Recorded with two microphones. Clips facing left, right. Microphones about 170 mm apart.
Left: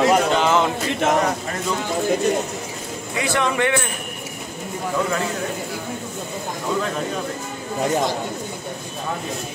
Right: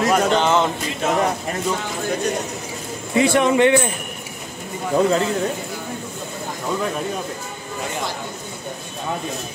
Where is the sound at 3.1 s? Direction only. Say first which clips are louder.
Right 6 dB; 25° right (ahead or behind).